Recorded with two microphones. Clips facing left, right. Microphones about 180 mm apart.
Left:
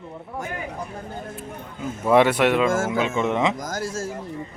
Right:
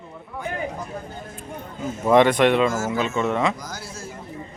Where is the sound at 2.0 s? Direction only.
10° left (ahead or behind).